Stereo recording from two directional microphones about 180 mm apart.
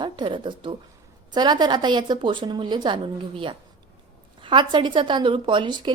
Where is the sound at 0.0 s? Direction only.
25° right (ahead or behind).